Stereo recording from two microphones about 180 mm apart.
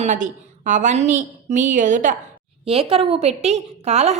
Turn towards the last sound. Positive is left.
turn(degrees=-35)  # may be behind; listen again after turning